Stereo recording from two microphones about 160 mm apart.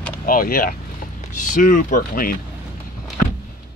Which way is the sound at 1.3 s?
55° left (ahead or behind).